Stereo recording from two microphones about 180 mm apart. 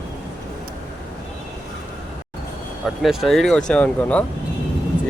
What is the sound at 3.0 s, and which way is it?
Speech, centre (ahead or behind).